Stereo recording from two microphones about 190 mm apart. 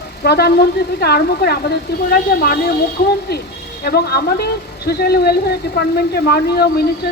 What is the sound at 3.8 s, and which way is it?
A woman's voice, 55° left (ahead or behind).